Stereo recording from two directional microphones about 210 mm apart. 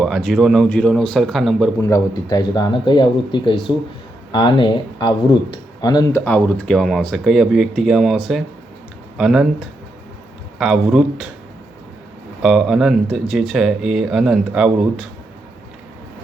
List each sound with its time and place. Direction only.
0.0 s speech: centre (ahead or behind)
1.8 s speech: 15° left (ahead or behind)
6.2 s speech: 5° left (ahead or behind)
10.6 s speech: 5° right (ahead or behind)
12.4 s speech: 5° right (ahead or behind)